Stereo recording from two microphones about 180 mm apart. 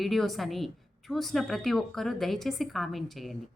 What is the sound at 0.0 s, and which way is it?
Speech, centre (ahead or behind).